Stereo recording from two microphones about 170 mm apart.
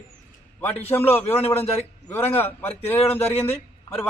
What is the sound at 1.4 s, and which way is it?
Speech, 35° left (ahead or behind).